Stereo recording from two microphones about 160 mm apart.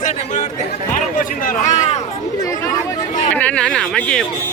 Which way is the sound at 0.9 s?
60° left (ahead or behind).